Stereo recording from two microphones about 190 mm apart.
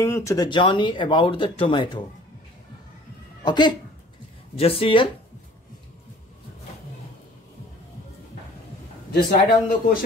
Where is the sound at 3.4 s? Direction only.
25° left (ahead or behind).